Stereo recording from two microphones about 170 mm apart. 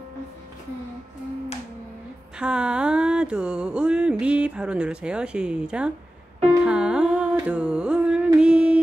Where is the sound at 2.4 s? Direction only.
5° right (ahead or behind).